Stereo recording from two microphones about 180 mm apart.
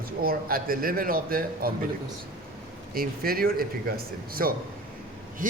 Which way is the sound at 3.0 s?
55° right (ahead or behind).